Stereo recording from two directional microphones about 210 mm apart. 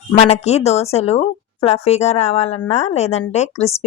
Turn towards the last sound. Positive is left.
turn(degrees=30)  # may be behind; listen again after turning